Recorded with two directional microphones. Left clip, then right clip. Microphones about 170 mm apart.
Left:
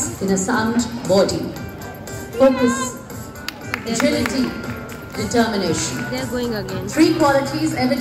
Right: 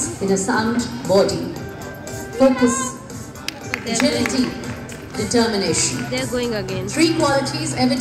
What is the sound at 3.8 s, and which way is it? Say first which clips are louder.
Speech: even; 15° right (ahead or behind).